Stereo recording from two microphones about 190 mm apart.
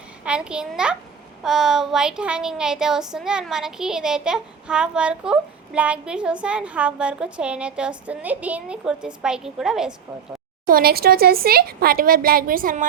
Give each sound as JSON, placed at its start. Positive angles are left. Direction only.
{"t": 0.3, "sound": "child singing", "side_deg": -5}
{"t": 10.7, "sound": "speech", "side_deg": -50}